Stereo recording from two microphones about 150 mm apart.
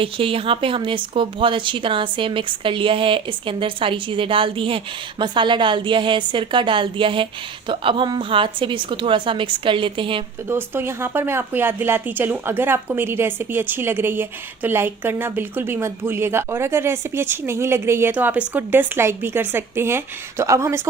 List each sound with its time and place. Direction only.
0.0 s a woman's voice: 35° right (ahead or behind)
10.5 s speech: 15° right (ahead or behind)